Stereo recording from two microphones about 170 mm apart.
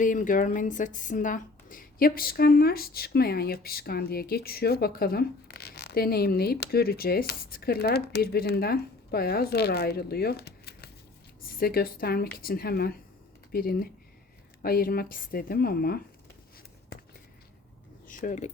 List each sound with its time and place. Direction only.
0.0 s a woman's voice: 50° left (ahead or behind)
18.1 s speech: 50° left (ahead or behind)